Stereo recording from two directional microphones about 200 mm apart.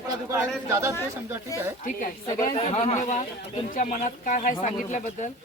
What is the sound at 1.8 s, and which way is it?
Speech, 40° left (ahead or behind).